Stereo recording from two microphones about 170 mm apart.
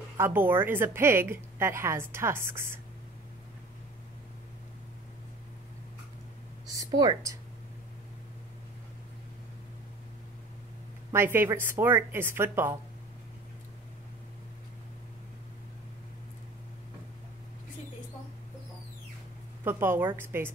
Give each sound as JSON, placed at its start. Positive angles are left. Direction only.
{"t": 0.2, "sound": "a woman's voice", "side_deg": -10}
{"t": 6.8, "sound": "speech", "side_deg": -25}
{"t": 11.1, "sound": "a woman's voice", "side_deg": -15}
{"t": 19.6, "sound": "a woman's voice", "side_deg": -15}